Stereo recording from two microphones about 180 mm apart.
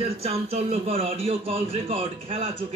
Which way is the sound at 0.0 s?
35° right (ahead or behind).